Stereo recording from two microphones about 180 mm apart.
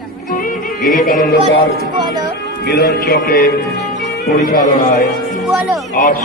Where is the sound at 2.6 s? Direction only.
60° left (ahead or behind).